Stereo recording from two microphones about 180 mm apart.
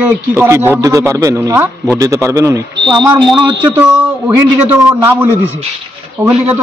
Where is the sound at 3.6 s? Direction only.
10° right (ahead or behind).